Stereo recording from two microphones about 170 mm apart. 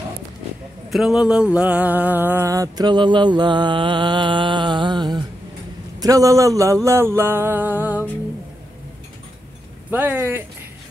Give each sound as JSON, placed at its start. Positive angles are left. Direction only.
{"t": 0.8, "sound": "a sound", "side_deg": 0}
{"t": 5.9, "sound": "music", "side_deg": -20}
{"t": 9.8, "sound": "music", "side_deg": -10}